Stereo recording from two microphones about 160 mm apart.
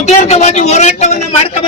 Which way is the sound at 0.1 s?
45° left (ahead or behind).